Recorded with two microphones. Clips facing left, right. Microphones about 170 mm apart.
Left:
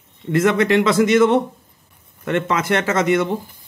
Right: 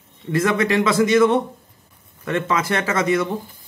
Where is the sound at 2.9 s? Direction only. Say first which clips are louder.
Left 2 dB; 25° left (ahead or behind).